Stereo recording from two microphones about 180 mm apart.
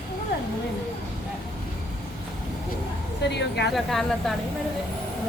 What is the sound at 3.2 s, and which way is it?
Speech, 70° left (ahead or behind).